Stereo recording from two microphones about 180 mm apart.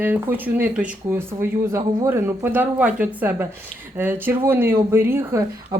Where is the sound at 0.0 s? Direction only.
10° right (ahead or behind).